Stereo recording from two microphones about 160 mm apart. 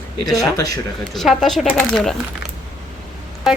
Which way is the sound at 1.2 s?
Centre (ahead or behind).